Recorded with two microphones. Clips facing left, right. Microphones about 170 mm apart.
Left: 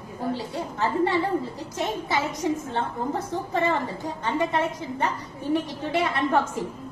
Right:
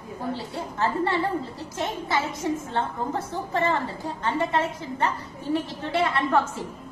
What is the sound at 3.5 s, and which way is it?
A woman's voice, 15° left (ahead or behind).